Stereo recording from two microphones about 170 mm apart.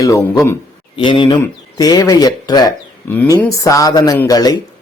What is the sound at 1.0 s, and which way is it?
Speech, 30° left (ahead or behind).